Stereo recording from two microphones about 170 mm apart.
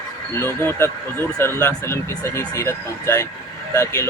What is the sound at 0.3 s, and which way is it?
Speech, 15° left (ahead or behind).